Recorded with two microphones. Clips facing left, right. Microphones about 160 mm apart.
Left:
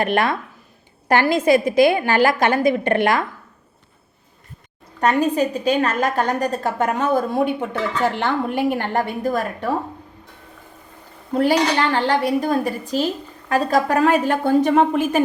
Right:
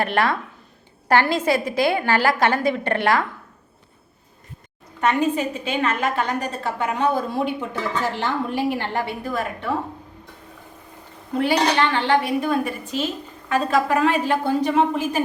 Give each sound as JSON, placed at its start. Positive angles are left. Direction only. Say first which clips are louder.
{"t": 0.0, "sound": "a woman's voice", "louder": "left 2 dB", "side_deg": 15}
{"t": 4.9, "sound": "a woman's voice", "louder": "left 3 dB", "side_deg": 40}
{"t": 11.3, "sound": "a woman's voice", "louder": "left 2 dB", "side_deg": 40}